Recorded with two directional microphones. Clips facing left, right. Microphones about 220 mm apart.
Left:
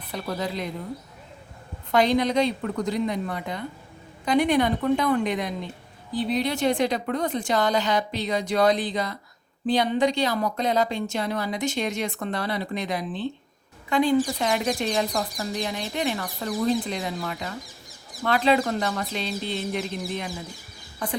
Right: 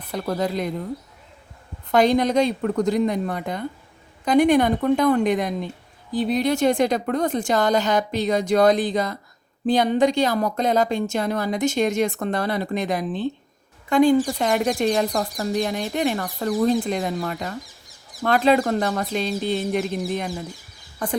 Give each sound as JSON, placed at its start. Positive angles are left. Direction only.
{"t": 0.1, "sound": "speech", "side_deg": -45}
{"t": 1.9, "sound": "speech", "side_deg": -45}